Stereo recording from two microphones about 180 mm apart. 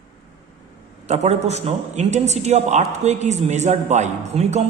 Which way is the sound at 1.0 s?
40° right (ahead or behind).